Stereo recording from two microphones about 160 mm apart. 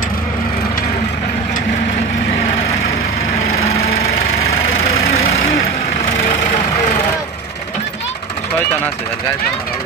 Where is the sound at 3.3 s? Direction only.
20° left (ahead or behind).